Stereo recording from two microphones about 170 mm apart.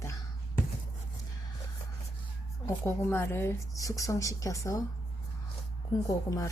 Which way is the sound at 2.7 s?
15° left (ahead or behind).